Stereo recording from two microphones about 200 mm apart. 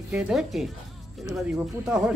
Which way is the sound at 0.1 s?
Centre (ahead or behind).